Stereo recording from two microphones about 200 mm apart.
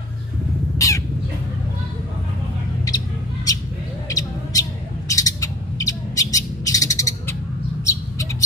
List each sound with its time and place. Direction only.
0.7 s crow: 15° left (ahead or behind)
4.1 s bird: 15° left (ahead or behind)
7.8 s a sound: 15° left (ahead or behind)